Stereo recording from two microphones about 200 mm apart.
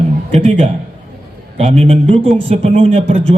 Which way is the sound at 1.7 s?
30° right (ahead or behind).